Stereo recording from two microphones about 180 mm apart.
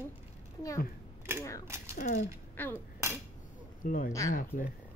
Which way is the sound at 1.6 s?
15° right (ahead or behind).